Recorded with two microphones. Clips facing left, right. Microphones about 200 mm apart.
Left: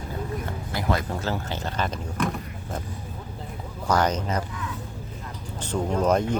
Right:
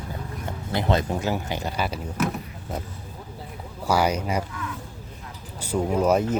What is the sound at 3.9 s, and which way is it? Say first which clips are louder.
Speech: right 1 dB; 10° right (ahead or behind).